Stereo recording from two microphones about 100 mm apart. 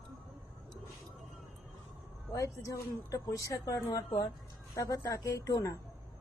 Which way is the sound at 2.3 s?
30° left (ahead or behind).